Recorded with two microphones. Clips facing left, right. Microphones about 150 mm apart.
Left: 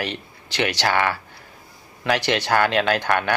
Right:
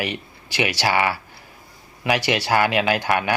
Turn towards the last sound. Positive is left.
turn(degrees=-10)  # may be behind; listen again after turning